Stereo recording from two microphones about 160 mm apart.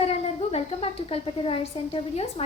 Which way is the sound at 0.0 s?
40° left (ahead or behind).